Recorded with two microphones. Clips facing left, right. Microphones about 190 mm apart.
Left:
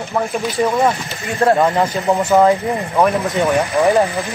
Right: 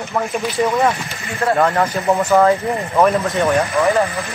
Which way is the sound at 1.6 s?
15° left (ahead or behind).